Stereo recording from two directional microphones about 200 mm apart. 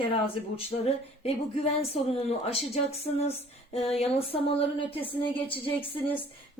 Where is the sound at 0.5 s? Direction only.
30° left (ahead or behind).